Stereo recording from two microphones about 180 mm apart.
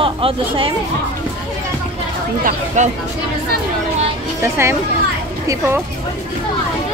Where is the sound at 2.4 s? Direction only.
45° right (ahead or behind).